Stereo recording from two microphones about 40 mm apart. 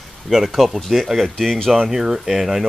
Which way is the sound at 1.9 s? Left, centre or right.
Centre.